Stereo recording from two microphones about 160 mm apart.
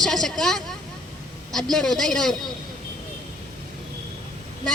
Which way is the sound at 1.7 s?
5° left (ahead or behind).